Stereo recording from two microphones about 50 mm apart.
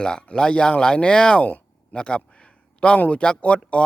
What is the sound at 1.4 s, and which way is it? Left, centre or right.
Speech, left.